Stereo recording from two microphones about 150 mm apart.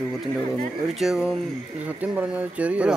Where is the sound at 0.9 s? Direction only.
5° right (ahead or behind).